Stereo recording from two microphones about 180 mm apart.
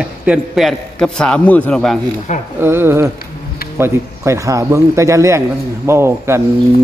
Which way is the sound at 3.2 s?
55° left (ahead or behind).